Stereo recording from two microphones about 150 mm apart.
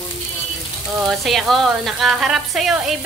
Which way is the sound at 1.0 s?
Centre (ahead or behind).